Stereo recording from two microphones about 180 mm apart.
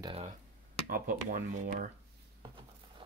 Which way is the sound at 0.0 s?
30° right (ahead or behind).